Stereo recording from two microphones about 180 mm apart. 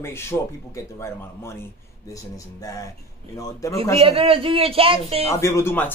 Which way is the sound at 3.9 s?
30° right (ahead or behind).